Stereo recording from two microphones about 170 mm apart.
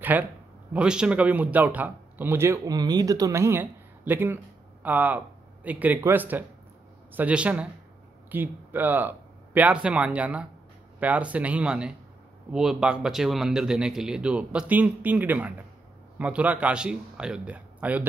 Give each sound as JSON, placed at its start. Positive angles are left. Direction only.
{"t": 0.0, "sound": "speech", "side_deg": -10}